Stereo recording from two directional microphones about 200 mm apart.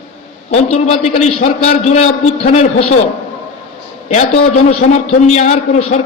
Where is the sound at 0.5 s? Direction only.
35° left (ahead or behind).